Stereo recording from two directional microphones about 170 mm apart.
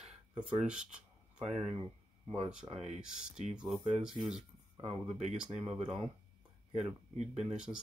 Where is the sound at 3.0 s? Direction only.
5° right (ahead or behind).